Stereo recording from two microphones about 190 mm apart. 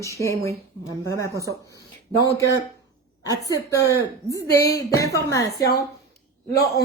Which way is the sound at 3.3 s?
15° left (ahead or behind).